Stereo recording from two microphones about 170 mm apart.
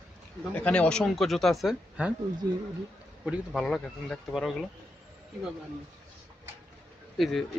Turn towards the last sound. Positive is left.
turn(degrees=0)  # may be behind; listen again after turning